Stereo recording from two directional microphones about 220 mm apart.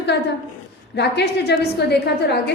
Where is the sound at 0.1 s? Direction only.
50° left (ahead or behind).